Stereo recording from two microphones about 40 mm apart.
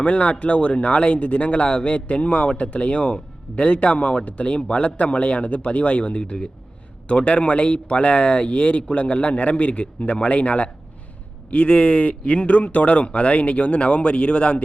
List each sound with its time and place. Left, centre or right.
0.0 s speech: left